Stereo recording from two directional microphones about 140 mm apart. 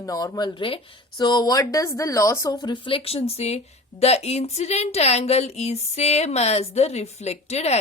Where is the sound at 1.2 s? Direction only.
25° left (ahead or behind).